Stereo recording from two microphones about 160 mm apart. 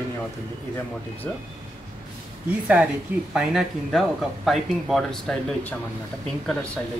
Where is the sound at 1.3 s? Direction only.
10° left (ahead or behind).